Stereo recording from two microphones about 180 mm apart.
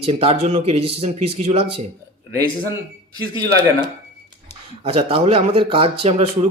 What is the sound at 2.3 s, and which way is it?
A man's voice, 20° right (ahead or behind).